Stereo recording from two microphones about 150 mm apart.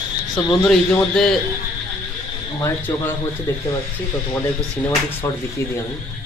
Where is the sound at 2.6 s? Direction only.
15° left (ahead or behind).